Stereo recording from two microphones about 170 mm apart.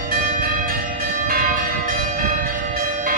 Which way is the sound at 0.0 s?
55° right (ahead or behind).